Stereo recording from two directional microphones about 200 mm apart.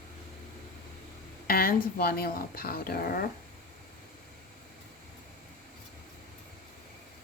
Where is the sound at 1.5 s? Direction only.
50° left (ahead or behind).